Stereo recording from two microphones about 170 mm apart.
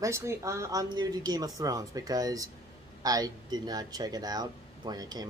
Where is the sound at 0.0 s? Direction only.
15° right (ahead or behind).